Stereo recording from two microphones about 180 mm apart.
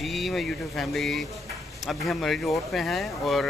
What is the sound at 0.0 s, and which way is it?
Speech, centre (ahead or behind).